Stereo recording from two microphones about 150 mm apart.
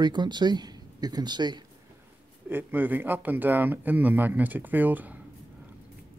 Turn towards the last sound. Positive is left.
turn(degrees=-10)  # may be behind; listen again after turning